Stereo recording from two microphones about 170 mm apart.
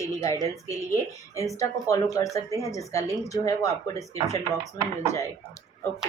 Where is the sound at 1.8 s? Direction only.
20° left (ahead or behind).